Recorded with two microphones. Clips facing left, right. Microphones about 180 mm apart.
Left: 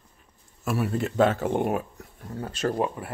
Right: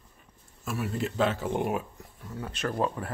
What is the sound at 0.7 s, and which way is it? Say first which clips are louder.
Speech: left 5 dB; 60° left (ahead or behind).